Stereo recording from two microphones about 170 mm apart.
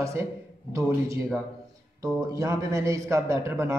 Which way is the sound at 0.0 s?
15° right (ahead or behind).